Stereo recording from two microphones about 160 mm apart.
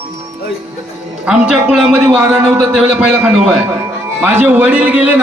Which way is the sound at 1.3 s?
5° right (ahead or behind).